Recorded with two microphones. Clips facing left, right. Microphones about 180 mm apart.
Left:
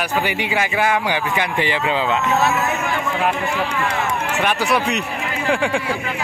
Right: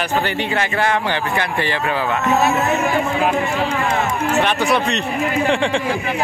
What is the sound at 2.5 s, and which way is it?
Speech, 35° right (ahead or behind).